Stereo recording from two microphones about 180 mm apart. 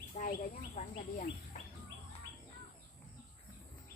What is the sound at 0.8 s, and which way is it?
Speech, 35° left (ahead or behind).